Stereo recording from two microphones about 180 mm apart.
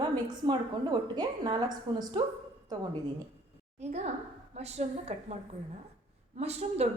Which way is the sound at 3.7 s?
35° right (ahead or behind).